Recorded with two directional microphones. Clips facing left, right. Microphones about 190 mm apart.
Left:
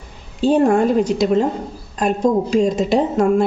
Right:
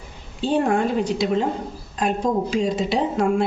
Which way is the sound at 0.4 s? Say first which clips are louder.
Left 6 dB; 45° left (ahead or behind).